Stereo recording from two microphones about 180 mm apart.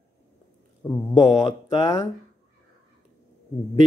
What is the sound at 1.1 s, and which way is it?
Mantra, 30° left (ahead or behind).